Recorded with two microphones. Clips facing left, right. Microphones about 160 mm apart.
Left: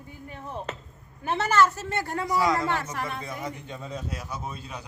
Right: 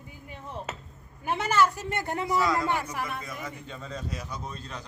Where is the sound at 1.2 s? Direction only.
10° right (ahead or behind).